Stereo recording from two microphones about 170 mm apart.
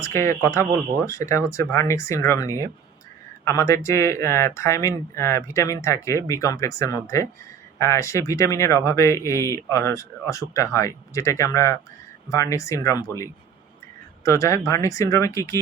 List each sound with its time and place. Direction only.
0.0 s speech: 15° left (ahead or behind)